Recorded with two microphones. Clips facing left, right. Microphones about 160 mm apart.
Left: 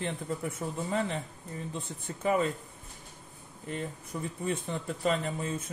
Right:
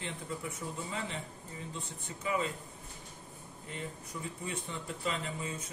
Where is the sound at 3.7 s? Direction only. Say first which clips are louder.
Left 6 dB; 50° left (ahead or behind).